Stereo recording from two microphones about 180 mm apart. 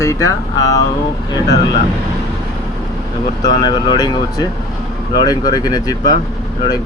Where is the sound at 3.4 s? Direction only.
25° left (ahead or behind).